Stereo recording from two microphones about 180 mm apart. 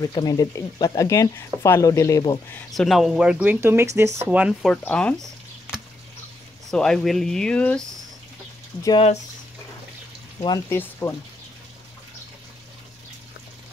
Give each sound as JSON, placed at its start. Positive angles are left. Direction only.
{"t": 0.0, "sound": "speech", "side_deg": 20}
{"t": 2.7, "sound": "speech", "side_deg": 0}
{"t": 6.7, "sound": "speech", "side_deg": 5}
{"t": 10.4, "sound": "speech", "side_deg": 20}